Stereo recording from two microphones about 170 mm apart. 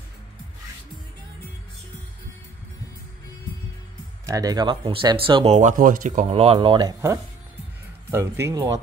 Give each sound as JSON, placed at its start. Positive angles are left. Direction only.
{"t": 4.3, "sound": "speech", "side_deg": -20}